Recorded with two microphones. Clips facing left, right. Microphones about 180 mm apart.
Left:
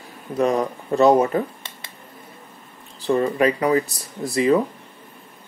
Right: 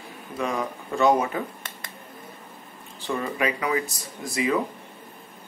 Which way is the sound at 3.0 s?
35° left (ahead or behind).